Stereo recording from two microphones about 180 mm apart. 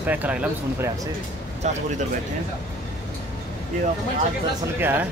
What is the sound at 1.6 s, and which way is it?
Speech, 40° right (ahead or behind).